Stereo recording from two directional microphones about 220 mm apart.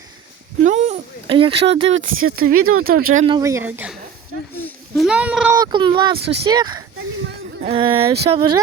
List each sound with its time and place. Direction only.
0.6 s a sound: 30° right (ahead or behind)
2.3 s speech: 40° right (ahead or behind)
2.6 s speech: 70° right (ahead or behind)
3.2 s a woman's voice: 20° right (ahead or behind)
4.5 s a sound: 10° left (ahead or behind)
5.0 s speech: 5° right (ahead or behind)
5.5 s speech: 20° right (ahead or behind)